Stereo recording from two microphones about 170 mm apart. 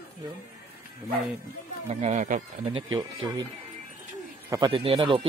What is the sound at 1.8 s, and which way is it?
Speech, 40° right (ahead or behind).